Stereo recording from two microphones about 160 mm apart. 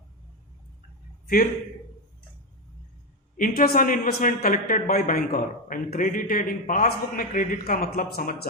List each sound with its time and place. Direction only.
3.3 s a man's voice: 55° left (ahead or behind)